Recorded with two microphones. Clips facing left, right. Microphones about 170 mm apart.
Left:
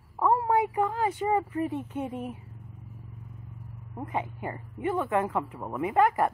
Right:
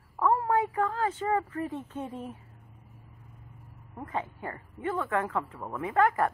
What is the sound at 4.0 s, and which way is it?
Speech, 15° left (ahead or behind).